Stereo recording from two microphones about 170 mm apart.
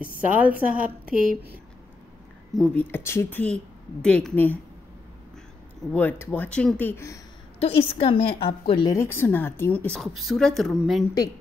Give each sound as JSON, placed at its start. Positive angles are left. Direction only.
{"t": 0.3, "sound": "a woman's voice", "side_deg": -10}
{"t": 2.5, "sound": "speech", "side_deg": 5}
{"t": 5.9, "sound": "speech", "side_deg": 10}
{"t": 7.5, "sound": "a woman's voice", "side_deg": 35}
{"t": 8.9, "sound": "a woman's voice", "side_deg": 15}